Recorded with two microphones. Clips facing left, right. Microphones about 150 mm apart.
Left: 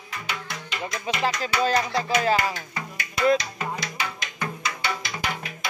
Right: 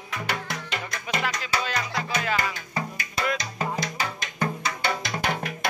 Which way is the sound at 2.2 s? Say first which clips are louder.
Left 4 dB; 35° left (ahead or behind).